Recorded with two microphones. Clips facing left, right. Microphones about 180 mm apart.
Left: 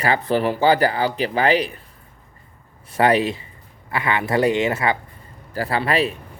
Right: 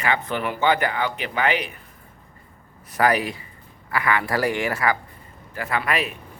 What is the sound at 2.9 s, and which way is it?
Speech, 25° left (ahead or behind).